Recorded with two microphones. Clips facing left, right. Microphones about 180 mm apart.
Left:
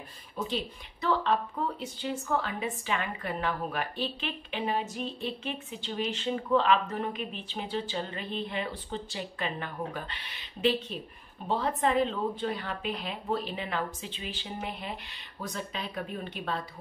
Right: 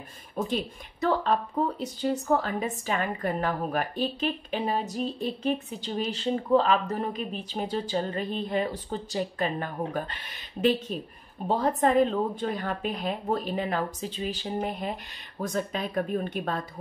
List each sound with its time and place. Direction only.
0.4 s speech: 50° right (ahead or behind)